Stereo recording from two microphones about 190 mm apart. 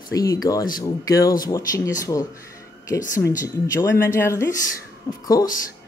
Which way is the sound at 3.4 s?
15° left (ahead or behind).